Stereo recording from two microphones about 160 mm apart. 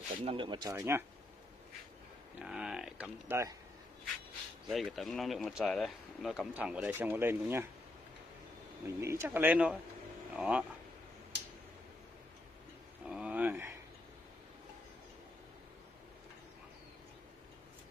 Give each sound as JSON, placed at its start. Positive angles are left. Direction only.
{"t": 0.2, "sound": "speech", "side_deg": -35}
{"t": 2.3, "sound": "speech", "side_deg": -5}
{"t": 3.3, "sound": "speech", "side_deg": -15}
{"t": 4.6, "sound": "speech", "side_deg": 0}
{"t": 8.8, "sound": "speech", "side_deg": -15}
{"t": 13.0, "sound": "a sound", "side_deg": -5}